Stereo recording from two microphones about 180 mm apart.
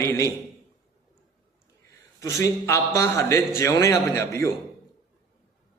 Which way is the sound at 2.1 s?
15° left (ahead or behind).